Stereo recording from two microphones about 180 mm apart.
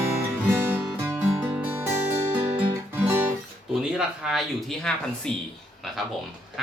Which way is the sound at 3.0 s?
10° right (ahead or behind).